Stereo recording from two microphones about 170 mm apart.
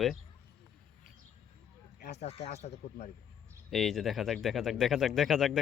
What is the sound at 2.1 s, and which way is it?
Speech, 40° left (ahead or behind).